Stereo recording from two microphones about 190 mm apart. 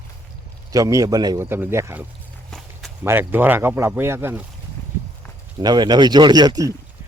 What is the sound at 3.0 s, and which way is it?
Speech, 10° right (ahead or behind).